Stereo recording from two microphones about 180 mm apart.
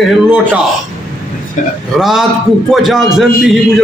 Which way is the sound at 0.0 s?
5° right (ahead or behind).